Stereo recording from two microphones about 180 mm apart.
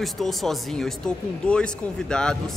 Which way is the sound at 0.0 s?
Centre (ahead or behind).